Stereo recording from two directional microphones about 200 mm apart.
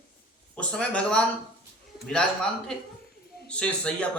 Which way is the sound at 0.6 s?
5° left (ahead or behind).